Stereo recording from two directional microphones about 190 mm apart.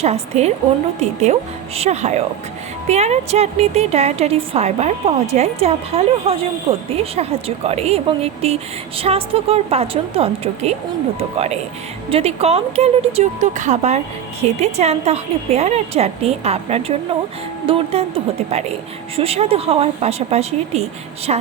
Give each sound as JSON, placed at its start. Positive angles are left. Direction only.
{"t": 0.0, "sound": "a woman's voice", "side_deg": -35}